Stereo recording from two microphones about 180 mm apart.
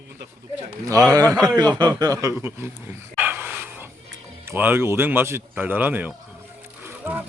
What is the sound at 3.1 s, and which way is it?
Dog, 10° right (ahead or behind).